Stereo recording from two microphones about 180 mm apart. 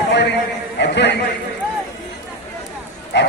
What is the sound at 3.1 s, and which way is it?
Pig, 75° left (ahead or behind).